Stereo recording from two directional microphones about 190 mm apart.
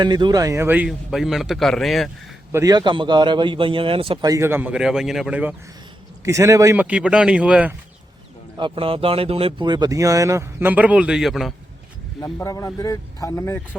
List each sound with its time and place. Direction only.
0.0 s a man's voice: 25° right (ahead or behind); by 2.0 s centre (ahead or behind)
2.5 s a man's voice: 15° right (ahead or behind)
8.5 s speech: 25° right (ahead or behind); by 11.5 s centre (ahead or behind)
12.2 s a man's voice: 15° left (ahead or behind)